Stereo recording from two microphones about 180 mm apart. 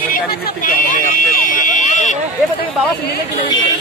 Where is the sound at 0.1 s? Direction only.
50° left (ahead or behind).